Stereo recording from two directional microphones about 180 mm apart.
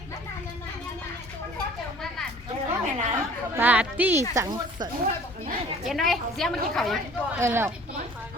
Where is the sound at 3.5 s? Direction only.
10° right (ahead or behind).